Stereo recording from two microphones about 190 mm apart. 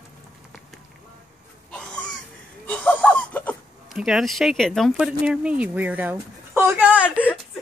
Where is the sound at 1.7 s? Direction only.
5° left (ahead or behind).